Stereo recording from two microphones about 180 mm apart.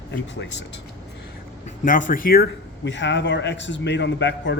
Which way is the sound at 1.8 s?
45° left (ahead or behind).